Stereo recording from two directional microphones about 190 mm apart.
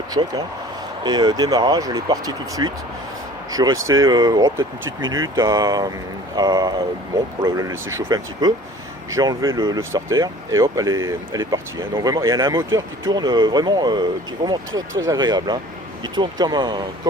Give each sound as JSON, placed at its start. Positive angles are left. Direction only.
{"t": 0.1, "sound": "speech", "side_deg": -20}